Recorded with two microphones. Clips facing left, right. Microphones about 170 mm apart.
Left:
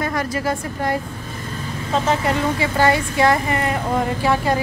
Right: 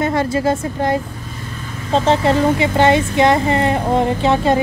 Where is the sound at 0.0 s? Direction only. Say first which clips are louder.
Right 6 dB; 25° right (ahead or behind).